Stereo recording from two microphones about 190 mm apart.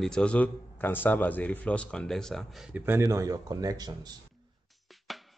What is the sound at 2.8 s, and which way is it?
Speech, 15° right (ahead or behind).